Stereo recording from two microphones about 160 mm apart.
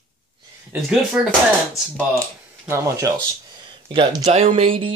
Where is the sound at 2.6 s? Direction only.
20° right (ahead or behind).